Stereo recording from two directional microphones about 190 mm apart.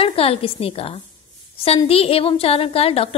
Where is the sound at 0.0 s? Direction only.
30° left (ahead or behind).